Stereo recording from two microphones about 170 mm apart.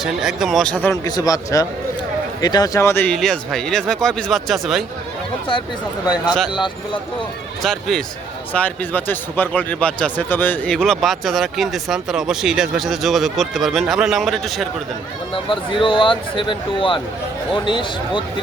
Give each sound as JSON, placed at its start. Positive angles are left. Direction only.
{"t": 0.0, "sound": "a man's voice", "side_deg": 0}
{"t": 1.0, "sound": "speech", "side_deg": 20}
{"t": 3.1, "sound": "a man's voice", "side_deg": 5}
{"t": 7.6, "sound": "a man's voice", "side_deg": 0}
{"t": 15.4, "sound": "speech", "side_deg": 30}